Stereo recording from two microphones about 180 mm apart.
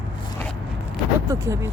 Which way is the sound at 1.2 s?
15° right (ahead or behind).